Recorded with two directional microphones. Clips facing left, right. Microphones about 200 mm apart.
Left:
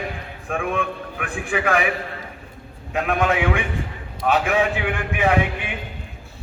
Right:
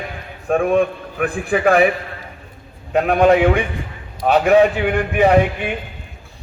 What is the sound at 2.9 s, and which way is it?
A man's voice, 35° right (ahead or behind).